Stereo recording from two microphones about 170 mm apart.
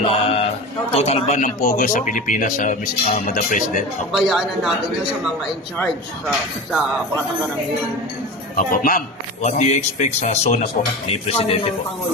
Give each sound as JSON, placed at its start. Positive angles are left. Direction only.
{"t": 0.1, "sound": "a sound", "side_deg": 35}
{"t": 0.9, "sound": "speech", "side_deg": 40}
{"t": 4.1, "sound": "speech", "side_deg": 0}
{"t": 8.5, "sound": "speech", "side_deg": 55}